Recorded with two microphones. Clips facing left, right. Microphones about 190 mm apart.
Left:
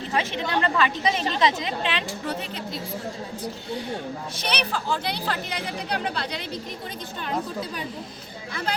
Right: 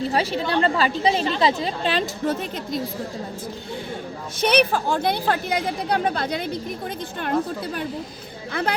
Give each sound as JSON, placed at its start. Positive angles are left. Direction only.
{"t": 0.1, "sound": "a woman's voice", "side_deg": -35}
{"t": 4.4, "sound": "speech", "side_deg": -50}